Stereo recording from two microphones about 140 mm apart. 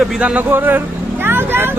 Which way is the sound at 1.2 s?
15° right (ahead or behind).